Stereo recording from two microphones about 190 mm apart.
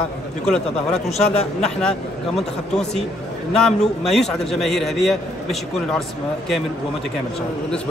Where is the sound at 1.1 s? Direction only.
35° left (ahead or behind).